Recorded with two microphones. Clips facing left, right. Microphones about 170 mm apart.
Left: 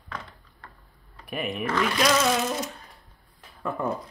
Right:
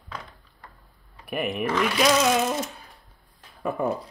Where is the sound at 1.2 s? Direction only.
Centre (ahead or behind).